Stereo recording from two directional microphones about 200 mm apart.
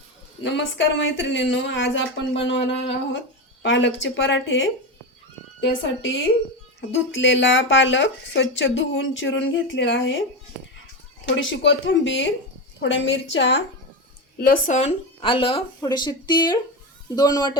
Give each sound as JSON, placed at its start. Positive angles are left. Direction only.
{"t": 0.4, "sound": "speech", "side_deg": 65}
{"t": 11.3, "sound": "speech", "side_deg": 70}
{"t": 14.4, "sound": "speech", "side_deg": 45}
{"t": 14.8, "sound": "speech", "side_deg": 30}